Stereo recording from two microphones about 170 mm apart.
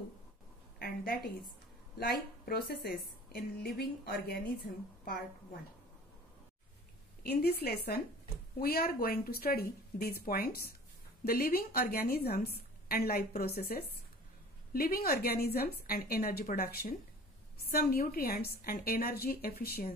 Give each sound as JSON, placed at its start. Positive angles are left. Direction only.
{"t": 0.7, "sound": "a sound", "side_deg": 60}
{"t": 2.0, "sound": "a woman's voice", "side_deg": 60}
{"t": 7.2, "sound": "a woman's voice", "side_deg": 65}